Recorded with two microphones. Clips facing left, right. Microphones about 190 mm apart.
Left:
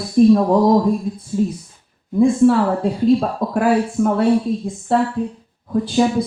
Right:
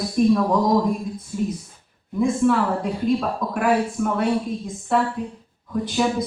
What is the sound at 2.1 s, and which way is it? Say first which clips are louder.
Speech: left 6 dB; 30° left (ahead or behind).